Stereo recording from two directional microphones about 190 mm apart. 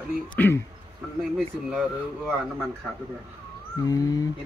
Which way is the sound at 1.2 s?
Centre (ahead or behind).